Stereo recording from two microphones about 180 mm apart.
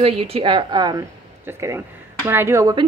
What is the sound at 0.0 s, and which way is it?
A woman's voice, 30° right (ahead or behind).